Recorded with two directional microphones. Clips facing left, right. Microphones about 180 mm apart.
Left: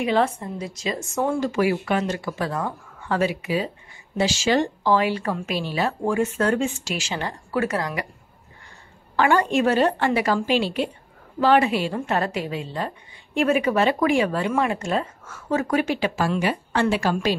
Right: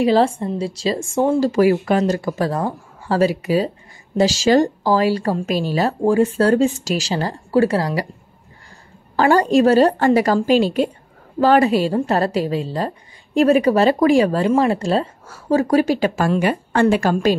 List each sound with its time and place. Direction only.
0.0 s a woman's voice: 30° right (ahead or behind)
9.1 s a woman's voice: 35° right (ahead or behind)